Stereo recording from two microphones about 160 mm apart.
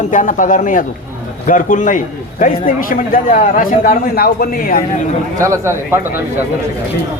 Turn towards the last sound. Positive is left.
turn(degrees=-20)  # may be behind; listen again after turning